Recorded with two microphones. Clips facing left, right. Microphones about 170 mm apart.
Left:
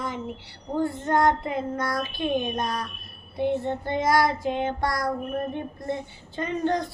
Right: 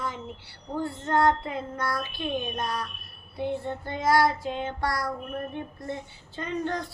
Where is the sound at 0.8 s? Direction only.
20° left (ahead or behind).